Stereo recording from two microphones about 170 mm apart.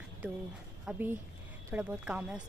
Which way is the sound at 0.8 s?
10° right (ahead or behind).